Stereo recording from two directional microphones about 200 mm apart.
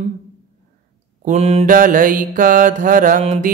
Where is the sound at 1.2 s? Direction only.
35° right (ahead or behind).